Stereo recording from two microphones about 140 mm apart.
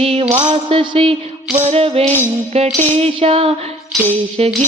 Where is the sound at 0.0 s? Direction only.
45° right (ahead or behind).